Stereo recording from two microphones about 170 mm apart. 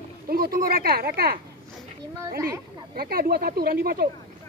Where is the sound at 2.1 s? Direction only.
15° right (ahead or behind).